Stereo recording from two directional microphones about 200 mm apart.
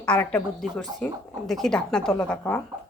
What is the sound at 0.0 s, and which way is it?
A woman's voice, 10° left (ahead or behind).